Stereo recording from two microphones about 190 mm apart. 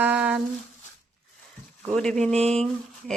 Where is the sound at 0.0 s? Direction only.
5° right (ahead or behind).